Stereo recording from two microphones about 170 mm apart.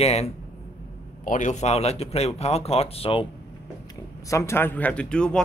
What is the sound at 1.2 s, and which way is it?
A man's voice, 50° left (ahead or behind).